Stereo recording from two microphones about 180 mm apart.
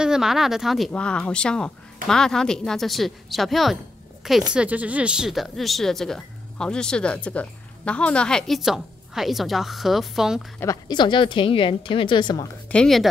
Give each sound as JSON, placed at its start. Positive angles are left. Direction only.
{"t": 0.0, "sound": "speech", "side_deg": -5}
{"t": 10.6, "sound": "a woman's voice", "side_deg": 20}
{"t": 12.7, "sound": "speech", "side_deg": 0}